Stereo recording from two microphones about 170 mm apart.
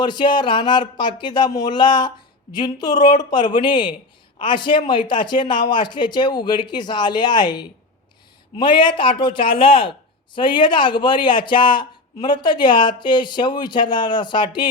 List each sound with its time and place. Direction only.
0.0 s a man's voice: 25° left (ahead or behind)